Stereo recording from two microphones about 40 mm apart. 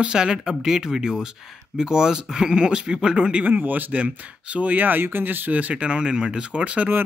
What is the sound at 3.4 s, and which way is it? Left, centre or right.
Speech, right.